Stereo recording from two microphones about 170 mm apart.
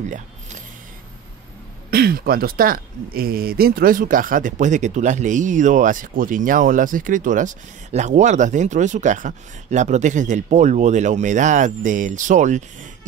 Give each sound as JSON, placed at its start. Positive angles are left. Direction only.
{"t": 1.9, "sound": "speech", "side_deg": -60}